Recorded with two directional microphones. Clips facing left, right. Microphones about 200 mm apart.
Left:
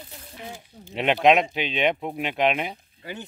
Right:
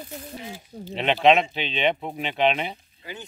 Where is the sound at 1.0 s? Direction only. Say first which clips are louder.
Even; 10° left (ahead or behind).